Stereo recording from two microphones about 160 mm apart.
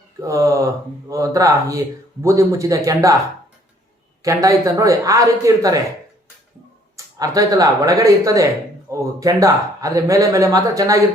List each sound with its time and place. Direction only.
0.2 s speech: 20° right (ahead or behind)
4.2 s speech: 20° right (ahead or behind)
6.9 s speech: 20° right (ahead or behind)